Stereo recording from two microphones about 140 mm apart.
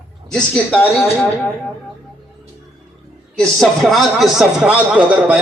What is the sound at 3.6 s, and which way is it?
A man's voice, centre (ahead or behind).